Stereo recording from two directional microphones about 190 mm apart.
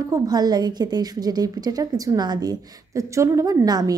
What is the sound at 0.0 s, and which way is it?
A woman's voice, 20° right (ahead or behind).